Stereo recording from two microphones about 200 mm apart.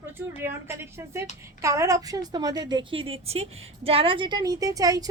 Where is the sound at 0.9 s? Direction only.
15° right (ahead or behind).